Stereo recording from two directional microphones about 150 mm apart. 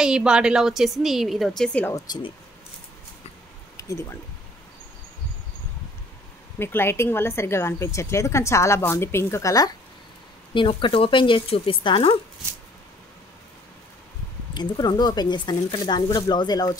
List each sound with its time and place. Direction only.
0.0 s a woman's voice: 5° right (ahead or behind)
3.7 s speech: 20° left (ahead or behind)
6.6 s a woman's voice: 15° left (ahead or behind)
10.5 s speech: 35° left (ahead or behind)
14.5 s speech: 30° left (ahead or behind)